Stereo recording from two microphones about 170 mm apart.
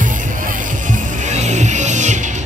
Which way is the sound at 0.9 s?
45° right (ahead or behind).